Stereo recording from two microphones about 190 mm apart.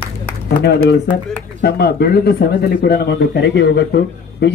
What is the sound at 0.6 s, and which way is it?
Speech, 60° left (ahead or behind).